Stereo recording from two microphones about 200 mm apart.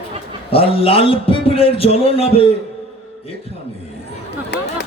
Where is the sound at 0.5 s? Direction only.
30° left (ahead or behind).